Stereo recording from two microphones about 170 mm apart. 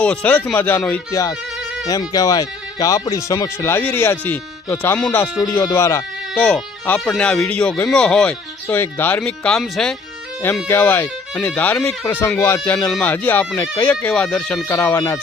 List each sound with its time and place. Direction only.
0.0 s speech: 5° left (ahead or behind)
1.1 s speech: 20° left (ahead or behind); by 9.9 s 5° left (ahead or behind)
10.4 s speech: 15° left (ahead or behind)
14.7 s speech: 15° left (ahead or behind)